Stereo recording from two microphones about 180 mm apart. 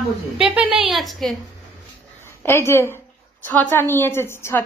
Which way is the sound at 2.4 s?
15° left (ahead or behind).